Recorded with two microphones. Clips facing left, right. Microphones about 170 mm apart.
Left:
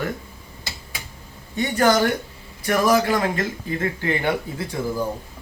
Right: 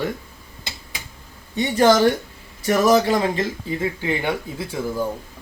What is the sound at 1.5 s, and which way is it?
Speech, 20° right (ahead or behind).